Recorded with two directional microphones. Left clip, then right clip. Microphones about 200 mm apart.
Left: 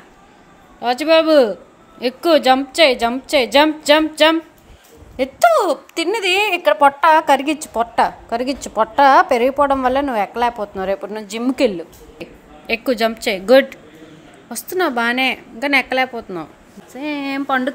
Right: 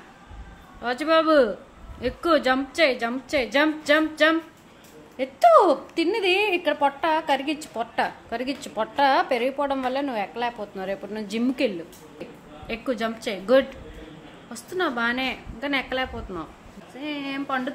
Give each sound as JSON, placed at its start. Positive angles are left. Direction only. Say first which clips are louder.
{"t": 0.7, "sound": "a woman's voice", "louder": "left 7 dB", "side_deg": 20}
{"t": 16.9, "sound": "speech", "louder": "left 8 dB", "side_deg": 45}